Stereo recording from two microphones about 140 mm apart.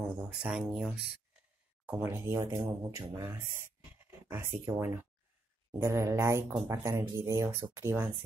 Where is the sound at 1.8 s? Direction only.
15° right (ahead or behind).